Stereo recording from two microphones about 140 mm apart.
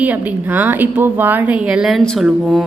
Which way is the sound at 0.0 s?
10° right (ahead or behind).